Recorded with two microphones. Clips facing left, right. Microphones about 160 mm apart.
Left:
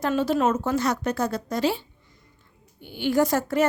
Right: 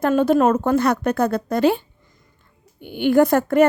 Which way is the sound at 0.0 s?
55° right (ahead or behind).